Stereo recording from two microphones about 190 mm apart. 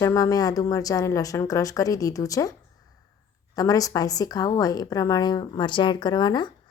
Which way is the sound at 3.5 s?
20° left (ahead or behind).